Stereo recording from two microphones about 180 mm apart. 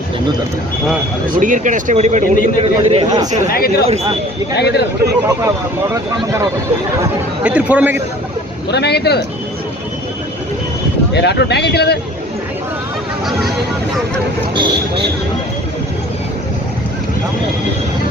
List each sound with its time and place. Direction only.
1.4 s a man's voice: 45° right (ahead or behind)
3.5 s a man's voice: 55° left (ahead or behind)
5.9 s speech: 15° right (ahead or behind)
8.7 s a man's voice: 65° left (ahead or behind)
11.1 s speech: 70° left (ahead or behind)
14.5 s speech: 25° right (ahead or behind)